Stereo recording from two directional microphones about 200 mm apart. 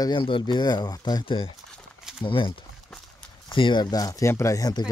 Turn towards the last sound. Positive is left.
turn(degrees=20)  # may be behind; listen again after turning